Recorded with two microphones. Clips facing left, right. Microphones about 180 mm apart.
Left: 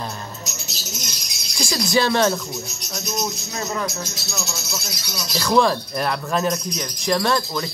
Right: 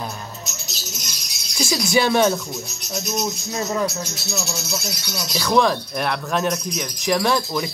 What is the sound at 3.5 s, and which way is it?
Speech, 20° right (ahead or behind).